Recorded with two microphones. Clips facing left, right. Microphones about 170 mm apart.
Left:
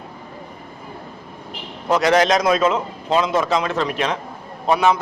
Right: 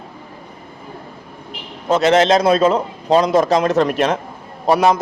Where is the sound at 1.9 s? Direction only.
25° right (ahead or behind).